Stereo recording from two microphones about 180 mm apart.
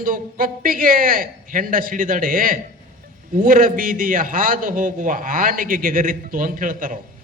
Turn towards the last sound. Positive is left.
turn(degrees=-50)  # may be behind; listen again after turning